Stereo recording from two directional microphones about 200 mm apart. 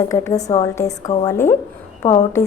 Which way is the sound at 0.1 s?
15° left (ahead or behind).